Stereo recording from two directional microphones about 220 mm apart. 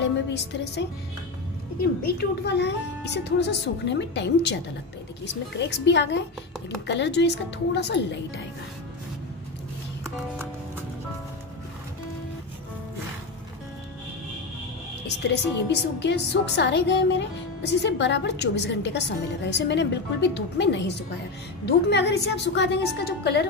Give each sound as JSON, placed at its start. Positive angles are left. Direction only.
{"t": 0.3, "sound": "a woman's voice", "side_deg": 50}
{"t": 2.1, "sound": "a woman's voice", "side_deg": 50}
{"t": 15.0, "sound": "a woman's voice", "side_deg": 50}